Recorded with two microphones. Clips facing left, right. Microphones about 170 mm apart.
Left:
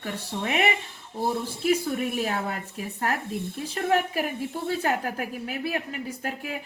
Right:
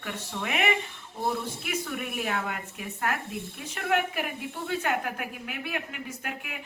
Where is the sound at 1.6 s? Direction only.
35° left (ahead or behind).